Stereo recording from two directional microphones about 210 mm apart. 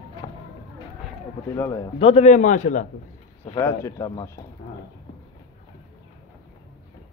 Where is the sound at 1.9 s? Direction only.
30° left (ahead or behind).